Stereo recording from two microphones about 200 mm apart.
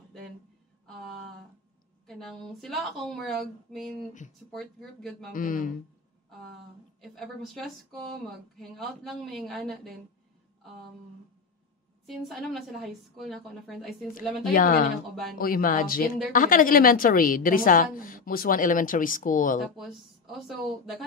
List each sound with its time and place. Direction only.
0.8 s a sound: centre (ahead or behind)
2.0 s a woman's voice: centre (ahead or behind)
4.5 s a woman's voice: centre (ahead or behind)
5.3 s a woman's voice: 45° left (ahead or behind)
7.0 s a woman's voice: centre (ahead or behind)
12.1 s a woman's voice: centre (ahead or behind)
14.1 s a woman's voice: 45° left (ahead or behind)
19.6 s a woman's voice: centre (ahead or behind)